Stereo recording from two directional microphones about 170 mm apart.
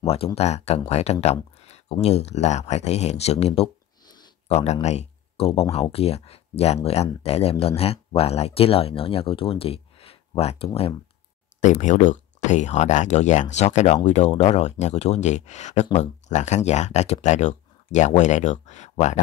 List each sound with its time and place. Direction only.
0.0 s speech: 35° left (ahead or behind)